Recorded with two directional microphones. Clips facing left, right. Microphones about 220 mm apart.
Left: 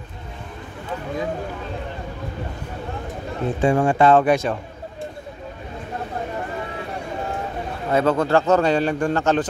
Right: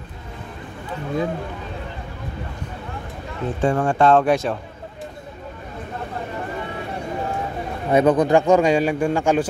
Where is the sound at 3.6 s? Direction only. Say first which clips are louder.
Left 1 dB; 10° left (ahead or behind).